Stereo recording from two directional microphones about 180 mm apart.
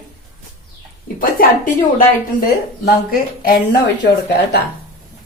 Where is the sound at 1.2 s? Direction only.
50° left (ahead or behind).